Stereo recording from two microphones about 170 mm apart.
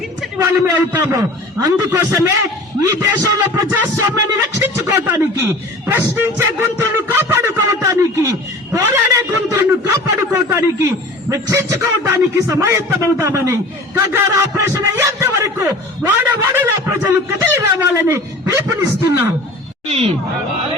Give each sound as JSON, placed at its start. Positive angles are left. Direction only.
{"t": 0.4, "sound": "a man's voice", "side_deg": -10}
{"t": 2.8, "sound": "music", "side_deg": -20}
{"t": 19.9, "sound": "speech", "side_deg": -35}